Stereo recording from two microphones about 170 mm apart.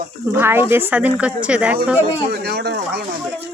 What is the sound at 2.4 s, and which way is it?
Speech, 70° right (ahead or behind).